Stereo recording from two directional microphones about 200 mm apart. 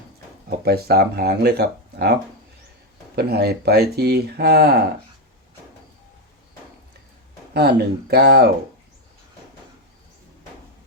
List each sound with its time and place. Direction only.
0.6 s speech: 50° right (ahead or behind)
3.2 s speech: 55° right (ahead or behind)
7.5 s speech: 55° right (ahead or behind)